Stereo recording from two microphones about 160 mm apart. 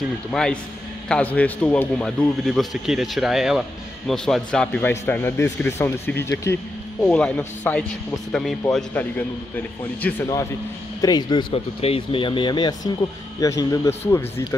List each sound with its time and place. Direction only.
0.3 s a man's voice: 5° left (ahead or behind)
10.0 s a man's voice: 10° left (ahead or behind)
11.0 s a man's voice: 25° left (ahead or behind)